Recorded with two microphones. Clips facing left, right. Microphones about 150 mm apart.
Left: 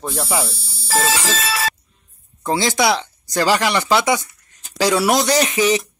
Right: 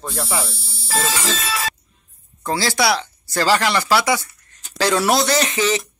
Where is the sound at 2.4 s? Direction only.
20° left (ahead or behind).